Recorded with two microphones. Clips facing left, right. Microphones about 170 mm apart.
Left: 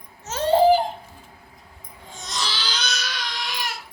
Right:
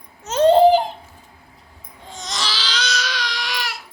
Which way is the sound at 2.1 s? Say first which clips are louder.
Right 3 dB; 90° right.